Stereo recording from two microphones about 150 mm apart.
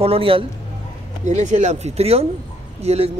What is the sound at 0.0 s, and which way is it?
Speech, 40° right (ahead or behind).